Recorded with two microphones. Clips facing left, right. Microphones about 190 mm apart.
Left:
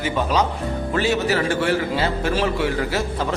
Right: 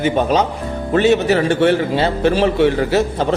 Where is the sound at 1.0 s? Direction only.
20° right (ahead or behind).